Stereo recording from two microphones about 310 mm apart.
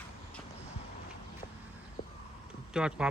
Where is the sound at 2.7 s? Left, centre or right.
Centre.